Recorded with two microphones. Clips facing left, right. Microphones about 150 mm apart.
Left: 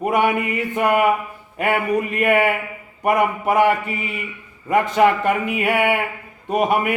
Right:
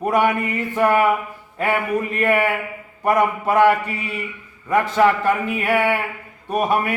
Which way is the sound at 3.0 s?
20° left (ahead or behind).